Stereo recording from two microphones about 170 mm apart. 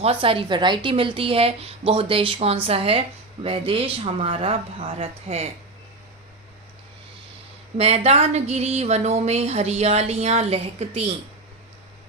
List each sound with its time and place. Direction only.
0.0 s speech: 35° right (ahead or behind)
7.8 s speech: 35° right (ahead or behind)